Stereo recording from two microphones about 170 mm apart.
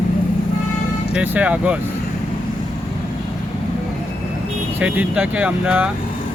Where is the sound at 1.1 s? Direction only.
10° right (ahead or behind).